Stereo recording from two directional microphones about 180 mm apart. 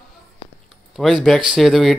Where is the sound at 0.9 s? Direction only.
Centre (ahead or behind).